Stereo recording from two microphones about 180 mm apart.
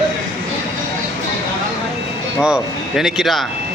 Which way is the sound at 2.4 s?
5° right (ahead or behind).